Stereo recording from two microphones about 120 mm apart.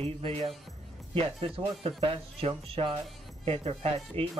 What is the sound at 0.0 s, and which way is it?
Speech, 55° right (ahead or behind).